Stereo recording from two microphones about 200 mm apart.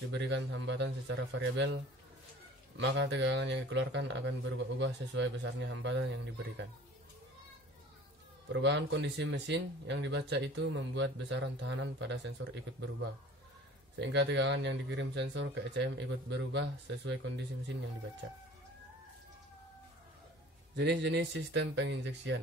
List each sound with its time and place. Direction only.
0.1 s speech: 65° right (ahead or behind)
2.8 s speech: 60° right (ahead or behind)
8.5 s speech: 60° right (ahead or behind)
20.7 s speech: 60° right (ahead or behind)